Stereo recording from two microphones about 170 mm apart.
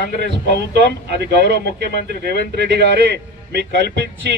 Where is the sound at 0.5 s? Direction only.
80° right.